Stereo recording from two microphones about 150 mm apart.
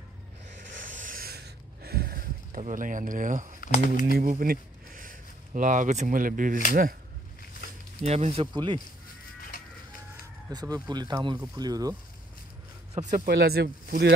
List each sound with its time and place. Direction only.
0.8 s a sound: 60° right (ahead or behind); by 2.6 s 85° right
2.7 s speech: 60° right (ahead or behind)
3.6 s speech: 60° left (ahead or behind)
4.1 s speech: 70° right (ahead or behind)
8.0 s speech: 45° right (ahead or behind); by 8.8 s 30° right (ahead or behind)
10.5 s speech: 25° right (ahead or behind)
13.1 s speech: 80° right